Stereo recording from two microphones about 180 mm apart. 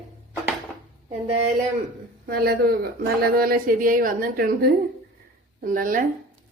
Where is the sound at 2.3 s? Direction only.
55° right (ahead or behind).